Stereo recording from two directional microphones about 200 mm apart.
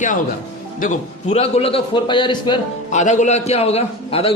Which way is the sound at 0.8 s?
35° left (ahead or behind).